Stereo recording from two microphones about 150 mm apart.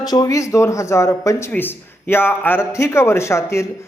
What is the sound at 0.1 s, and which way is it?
A man's voice, 25° left (ahead or behind).